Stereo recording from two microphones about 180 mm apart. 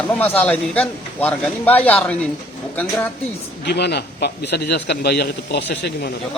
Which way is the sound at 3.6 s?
65° left (ahead or behind).